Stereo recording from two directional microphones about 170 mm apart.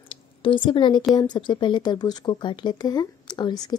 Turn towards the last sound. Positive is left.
turn(degrees=25)  # may be behind; listen again after turning